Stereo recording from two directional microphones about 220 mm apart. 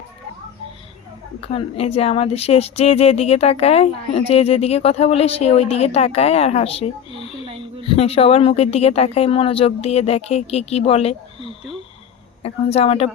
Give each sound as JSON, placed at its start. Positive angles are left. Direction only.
{"t": 1.4, "sound": "a woman's voice", "side_deg": 25}